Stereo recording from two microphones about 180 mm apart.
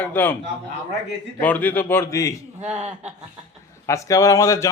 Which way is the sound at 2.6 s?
10° right (ahead or behind).